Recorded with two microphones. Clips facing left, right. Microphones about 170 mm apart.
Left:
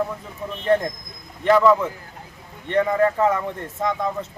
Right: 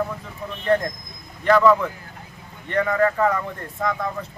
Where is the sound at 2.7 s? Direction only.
20° left (ahead or behind).